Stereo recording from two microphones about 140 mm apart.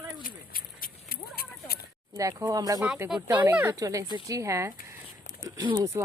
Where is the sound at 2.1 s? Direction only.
25° right (ahead or behind).